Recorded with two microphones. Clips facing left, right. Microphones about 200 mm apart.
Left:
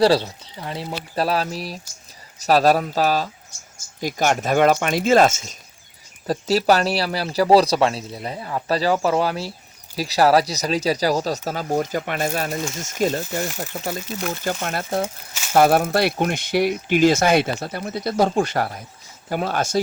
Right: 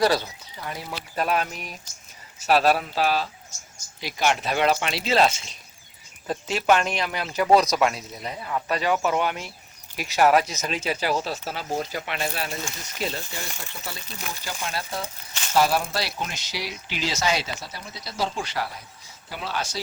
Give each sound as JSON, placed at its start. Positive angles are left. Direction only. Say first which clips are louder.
{"t": 0.0, "sound": "speech", "louder": "left 5 dB", "side_deg": 30}
{"t": 15.3, "sound": "speech", "louder": "left 1 dB", "side_deg": 10}
{"t": 15.5, "sound": "speech", "louder": "left 6 dB", "side_deg": 55}